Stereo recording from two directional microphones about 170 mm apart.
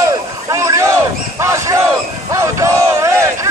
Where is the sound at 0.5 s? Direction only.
15° right (ahead or behind).